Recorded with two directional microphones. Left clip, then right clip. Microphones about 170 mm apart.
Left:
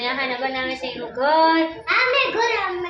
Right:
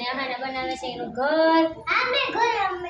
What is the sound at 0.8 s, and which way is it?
Child singing, 40° left (ahead or behind).